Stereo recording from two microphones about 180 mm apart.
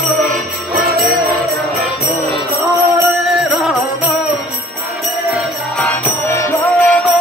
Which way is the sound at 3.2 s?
Centre (ahead or behind).